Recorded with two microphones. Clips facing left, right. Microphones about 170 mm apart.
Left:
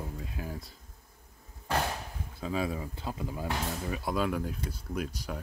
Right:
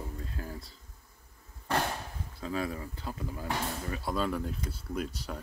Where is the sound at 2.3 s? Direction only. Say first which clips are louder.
Left 2 dB; 15° left (ahead or behind).